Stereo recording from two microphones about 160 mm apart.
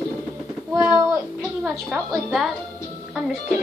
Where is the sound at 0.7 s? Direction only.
15° right (ahead or behind).